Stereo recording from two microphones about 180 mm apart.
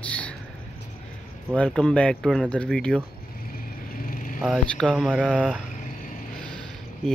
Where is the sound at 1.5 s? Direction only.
5° left (ahead or behind).